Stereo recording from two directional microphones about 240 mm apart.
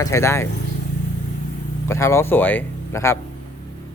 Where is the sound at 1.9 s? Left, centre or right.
Centre.